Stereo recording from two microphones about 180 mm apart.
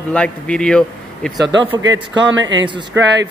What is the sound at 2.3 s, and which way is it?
Speech, 90° right.